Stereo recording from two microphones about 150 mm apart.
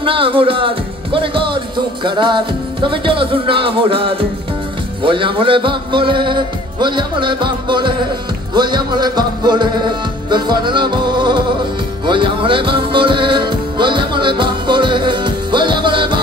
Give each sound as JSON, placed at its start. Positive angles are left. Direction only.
{"t": 0.0, "sound": "music", "side_deg": -35}